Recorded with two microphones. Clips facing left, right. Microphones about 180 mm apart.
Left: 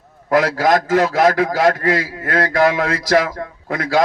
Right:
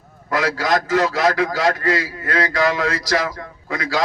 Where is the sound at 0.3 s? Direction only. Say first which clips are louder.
Left 5 dB; 55° left (ahead or behind).